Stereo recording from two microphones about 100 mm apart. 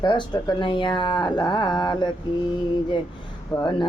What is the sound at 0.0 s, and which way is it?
Speech, 50° left (ahead or behind).